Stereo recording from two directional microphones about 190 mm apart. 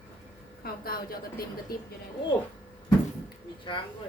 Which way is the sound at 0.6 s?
50° left (ahead or behind).